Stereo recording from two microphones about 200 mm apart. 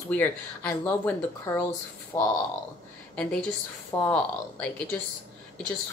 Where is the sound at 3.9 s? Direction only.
10° left (ahead or behind).